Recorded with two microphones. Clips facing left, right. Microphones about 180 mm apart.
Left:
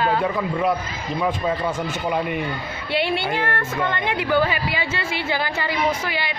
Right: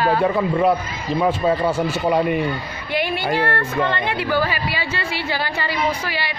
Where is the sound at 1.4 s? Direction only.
40° right (ahead or behind).